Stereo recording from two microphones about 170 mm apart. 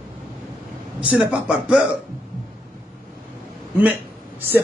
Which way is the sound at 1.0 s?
5° right (ahead or behind).